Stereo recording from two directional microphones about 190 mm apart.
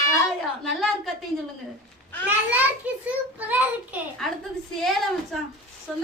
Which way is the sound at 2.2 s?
10° right (ahead or behind).